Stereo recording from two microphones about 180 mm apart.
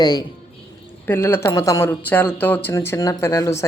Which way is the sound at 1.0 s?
10° left (ahead or behind).